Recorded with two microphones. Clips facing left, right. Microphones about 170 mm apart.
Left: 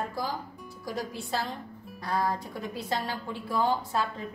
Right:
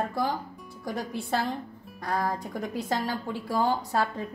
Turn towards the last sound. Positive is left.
turn(degrees=-40)  # may be behind; listen again after turning